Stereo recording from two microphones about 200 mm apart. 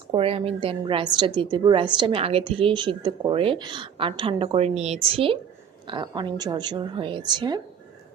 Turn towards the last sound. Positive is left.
turn(degrees=-20)  # may be behind; listen again after turning